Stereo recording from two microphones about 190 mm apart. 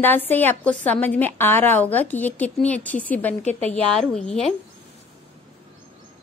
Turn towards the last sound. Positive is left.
turn(degrees=0)  # may be behind; listen again after turning